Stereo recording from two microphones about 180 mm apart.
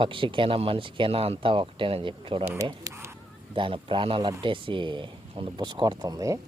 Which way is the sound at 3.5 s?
30° right (ahead or behind).